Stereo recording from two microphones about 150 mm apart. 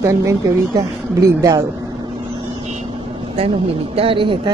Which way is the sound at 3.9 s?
35° right (ahead or behind).